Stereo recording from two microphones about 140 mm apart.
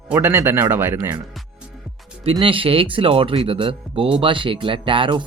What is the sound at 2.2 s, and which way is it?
Speech, 40° right (ahead or behind).